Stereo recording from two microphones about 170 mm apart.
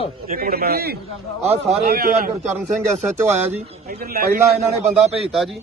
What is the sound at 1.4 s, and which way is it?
Speech, 40° right (ahead or behind).